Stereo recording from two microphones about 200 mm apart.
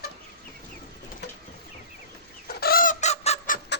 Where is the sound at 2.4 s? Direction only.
50° left (ahead or behind); by 3.5 s 30° left (ahead or behind).